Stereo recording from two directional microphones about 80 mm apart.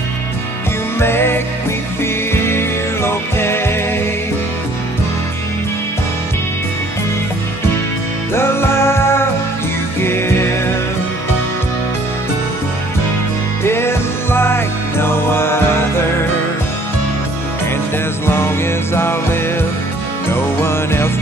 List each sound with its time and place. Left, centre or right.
0.9 s music: left
2.4 s music: left
8.3 s music: left
13.7 s music: left
18.2 s music: left